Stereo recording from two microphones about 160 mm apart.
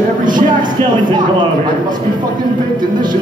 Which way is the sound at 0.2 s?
55° right (ahead or behind).